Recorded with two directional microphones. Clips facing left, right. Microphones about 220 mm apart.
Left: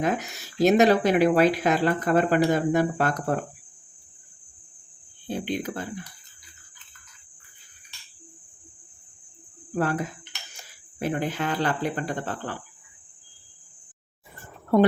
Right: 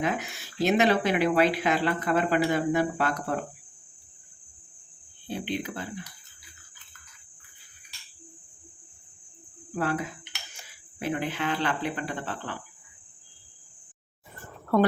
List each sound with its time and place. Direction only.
0.0 s speech: 40° left (ahead or behind)
5.3 s speech: 45° left (ahead or behind)
9.7 s speech: 40° left (ahead or behind)